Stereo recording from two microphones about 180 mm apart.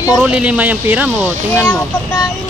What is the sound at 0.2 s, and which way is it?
Speech, 5° right (ahead or behind).